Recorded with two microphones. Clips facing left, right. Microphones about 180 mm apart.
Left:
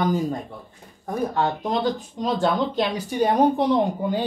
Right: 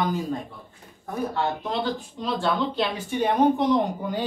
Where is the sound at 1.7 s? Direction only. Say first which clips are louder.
Left 4 dB; 45° left (ahead or behind).